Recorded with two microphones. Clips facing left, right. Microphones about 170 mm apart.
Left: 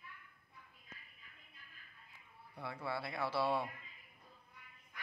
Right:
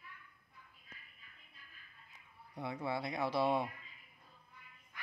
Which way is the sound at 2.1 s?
20° right (ahead or behind).